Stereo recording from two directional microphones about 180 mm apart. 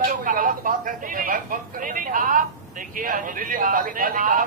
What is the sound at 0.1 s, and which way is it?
Speech, 50° right (ahead or behind).